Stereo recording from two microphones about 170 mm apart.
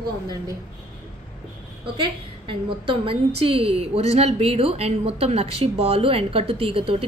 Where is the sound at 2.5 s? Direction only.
30° right (ahead or behind).